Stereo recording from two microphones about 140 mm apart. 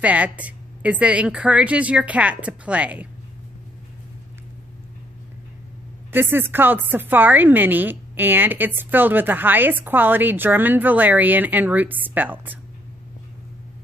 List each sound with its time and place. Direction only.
0.0 s a woman's voice: 10° right (ahead or behind)
6.1 s a woman's voice: 15° right (ahead or behind)